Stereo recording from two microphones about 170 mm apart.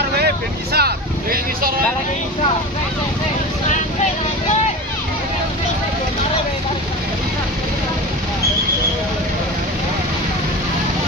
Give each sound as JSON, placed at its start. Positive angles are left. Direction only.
{"t": 0.7, "sound": "vehicle", "side_deg": -60}